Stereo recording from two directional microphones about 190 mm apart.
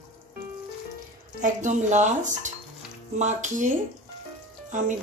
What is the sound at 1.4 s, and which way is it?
Speech, 40° right (ahead or behind).